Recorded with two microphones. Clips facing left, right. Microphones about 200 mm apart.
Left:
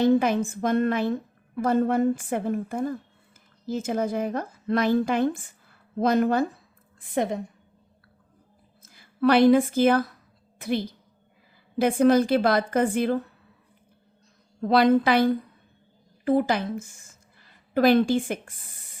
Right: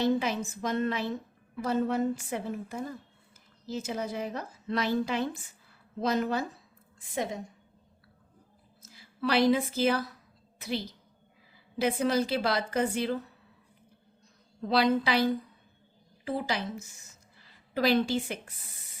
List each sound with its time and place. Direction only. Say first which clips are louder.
0.0 s a woman's voice: left 7 dB; 55° left (ahead or behind)
8.8 s a woman's voice: left 10 dB; 55° left (ahead or behind)
14.6 s a woman's voice: left 7 dB; 55° left (ahead or behind)